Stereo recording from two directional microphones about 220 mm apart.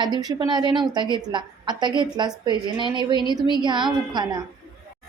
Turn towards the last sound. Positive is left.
turn(degrees=-20)  # may be behind; listen again after turning